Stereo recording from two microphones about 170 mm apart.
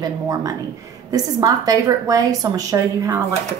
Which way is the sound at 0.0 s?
20° right (ahead or behind).